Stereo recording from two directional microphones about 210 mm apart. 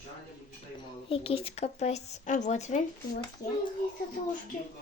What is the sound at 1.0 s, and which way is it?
Speech, 25° left (ahead or behind).